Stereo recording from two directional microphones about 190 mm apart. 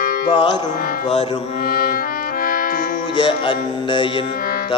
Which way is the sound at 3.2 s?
25° left (ahead or behind).